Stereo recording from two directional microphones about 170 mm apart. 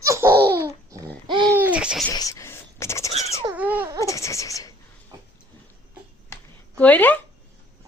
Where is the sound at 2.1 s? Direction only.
20° left (ahead or behind).